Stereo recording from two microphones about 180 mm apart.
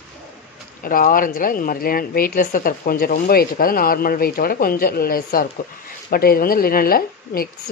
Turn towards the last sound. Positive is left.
turn(degrees=55)  # may be behind; listen again after turning